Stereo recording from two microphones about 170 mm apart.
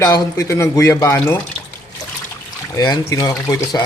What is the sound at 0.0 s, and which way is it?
Speech, 20° left (ahead or behind).